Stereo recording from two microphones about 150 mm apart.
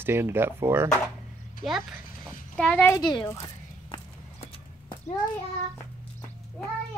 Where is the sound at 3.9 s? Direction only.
35° left (ahead or behind).